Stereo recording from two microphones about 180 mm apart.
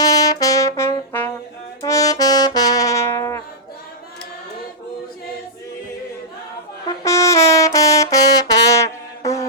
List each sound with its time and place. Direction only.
0.0 s brass instrument: 20° left (ahead or behind)
6.8 s brass instrument: 15° left (ahead or behind)